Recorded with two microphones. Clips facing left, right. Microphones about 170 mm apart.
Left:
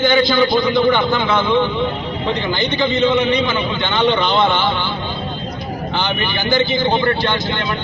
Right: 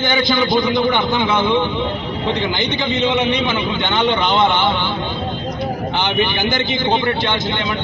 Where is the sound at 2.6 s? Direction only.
15° right (ahead or behind).